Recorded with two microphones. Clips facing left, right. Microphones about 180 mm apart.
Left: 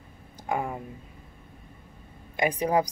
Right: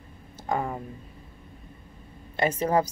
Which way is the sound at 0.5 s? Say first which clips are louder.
Right 1 dB; 10° left (ahead or behind).